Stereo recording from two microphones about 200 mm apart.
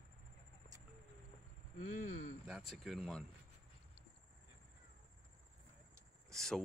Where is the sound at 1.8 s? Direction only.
40° left (ahead or behind).